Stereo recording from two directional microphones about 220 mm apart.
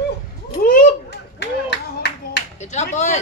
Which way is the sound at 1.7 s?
50° left (ahead or behind).